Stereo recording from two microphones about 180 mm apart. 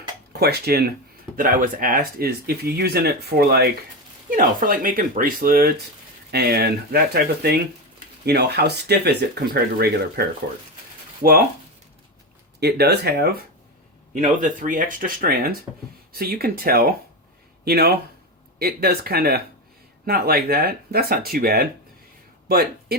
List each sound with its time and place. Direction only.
0.3 s speech: 60° right (ahead or behind)
1.4 s speech: 50° right (ahead or behind)
4.3 s speech: 50° right (ahead or behind)
12.5 s speech: 65° right (ahead or behind)
14.1 s speech: 45° right (ahead or behind)